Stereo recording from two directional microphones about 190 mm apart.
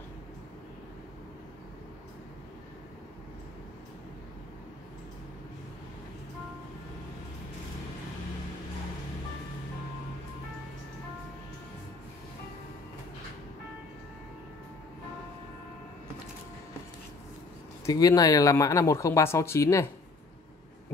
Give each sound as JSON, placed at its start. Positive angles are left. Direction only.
{"t": 17.8, "sound": "speech", "side_deg": 20}